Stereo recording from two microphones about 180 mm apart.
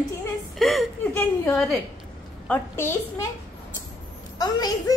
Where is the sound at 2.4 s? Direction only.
15° left (ahead or behind).